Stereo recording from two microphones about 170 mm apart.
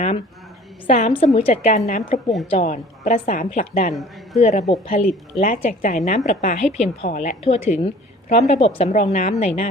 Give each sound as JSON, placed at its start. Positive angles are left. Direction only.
{"t": 0.9, "sound": "a woman's voice", "side_deg": 45}
{"t": 1.9, "sound": "a woman's voice", "side_deg": 50}
{"t": 3.9, "sound": "speech", "side_deg": 0}
{"t": 4.4, "sound": "a woman's voice", "side_deg": 40}
{"t": 5.4, "sound": "a woman's voice", "side_deg": 50}